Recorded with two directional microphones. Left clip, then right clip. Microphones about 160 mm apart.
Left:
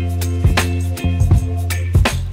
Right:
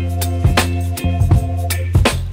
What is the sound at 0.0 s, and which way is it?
Music, centre (ahead or behind).